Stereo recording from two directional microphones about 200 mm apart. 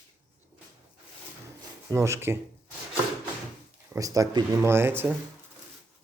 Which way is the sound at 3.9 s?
15° right (ahead or behind).